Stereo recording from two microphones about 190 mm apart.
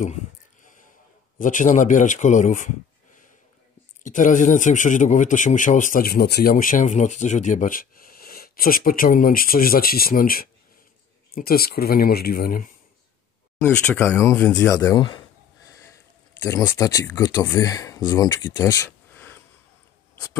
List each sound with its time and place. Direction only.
1.4 s speech: 40° left (ahead or behind)
4.0 s speech: 40° left (ahead or behind)
13.7 s speech: 10° left (ahead or behind)
16.3 s speech: 10° left (ahead or behind)